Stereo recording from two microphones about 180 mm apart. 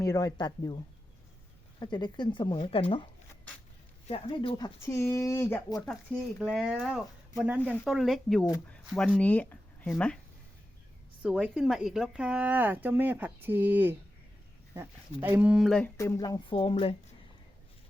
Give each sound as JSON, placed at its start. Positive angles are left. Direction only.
{"t": 0.0, "sound": "speech", "side_deg": 20}
{"t": 1.8, "sound": "speech", "side_deg": 25}
{"t": 5.8, "sound": "speech", "side_deg": 5}
{"t": 7.6, "sound": "speech", "side_deg": 10}
{"t": 7.9, "sound": "speech", "side_deg": 0}
{"t": 11.2, "sound": "speech", "side_deg": -5}
{"t": 15.2, "sound": "speech", "side_deg": -10}
{"t": 16.0, "sound": "speech", "side_deg": 15}